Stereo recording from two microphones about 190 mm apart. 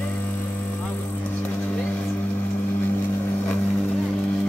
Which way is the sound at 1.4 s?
10° left (ahead or behind).